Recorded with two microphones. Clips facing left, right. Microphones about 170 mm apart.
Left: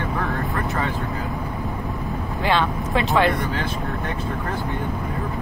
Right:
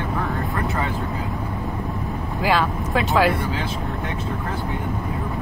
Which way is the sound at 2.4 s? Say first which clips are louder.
Right 1 dB; centre (ahead or behind).